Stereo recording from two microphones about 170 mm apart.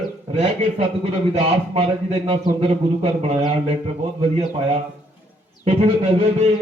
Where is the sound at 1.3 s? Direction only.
35° right (ahead or behind).